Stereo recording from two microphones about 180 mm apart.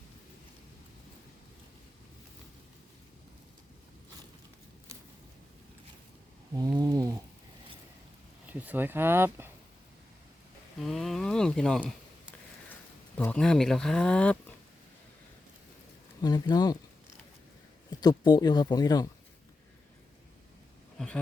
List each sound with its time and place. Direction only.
6.6 s a sound: 20° right (ahead or behind)
8.4 s speech: 10° right (ahead or behind)
10.8 s speech: centre (ahead or behind)
13.1 s speech: 5° left (ahead or behind)
16.2 s speech: 20° left (ahead or behind)
18.0 s speech: 25° left (ahead or behind)
21.0 s speech: 5° left (ahead or behind)